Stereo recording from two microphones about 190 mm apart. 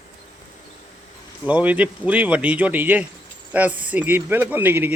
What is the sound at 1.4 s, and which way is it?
Speech, 5° right (ahead or behind).